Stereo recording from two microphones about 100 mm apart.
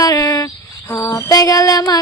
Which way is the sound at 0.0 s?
35° left (ahead or behind).